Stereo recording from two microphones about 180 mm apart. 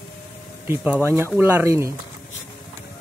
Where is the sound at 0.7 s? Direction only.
10° right (ahead or behind).